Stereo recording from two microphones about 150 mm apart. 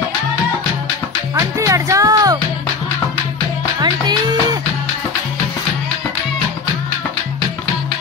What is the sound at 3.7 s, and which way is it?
Music, 30° right (ahead or behind).